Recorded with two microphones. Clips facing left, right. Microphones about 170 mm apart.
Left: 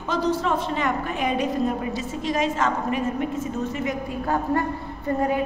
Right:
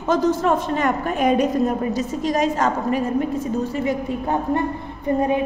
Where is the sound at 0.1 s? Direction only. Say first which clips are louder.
Right 5 dB; 45° right (ahead or behind).